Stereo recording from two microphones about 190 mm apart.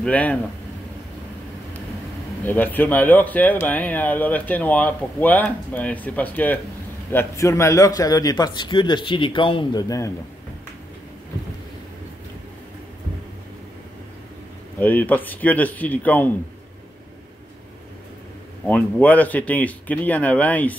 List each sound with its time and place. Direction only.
0.0 s speech: 5° left (ahead or behind)
2.4 s a man's voice: 10° left (ahead or behind)
14.8 s speech: 10° left (ahead or behind)
18.7 s speech: 10° left (ahead or behind)